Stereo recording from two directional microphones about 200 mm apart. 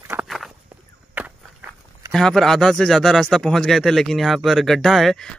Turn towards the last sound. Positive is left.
turn(degrees=0)  # may be behind; listen again after turning